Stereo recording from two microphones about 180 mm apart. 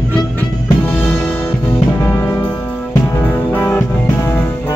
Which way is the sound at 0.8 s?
10° left (ahead or behind).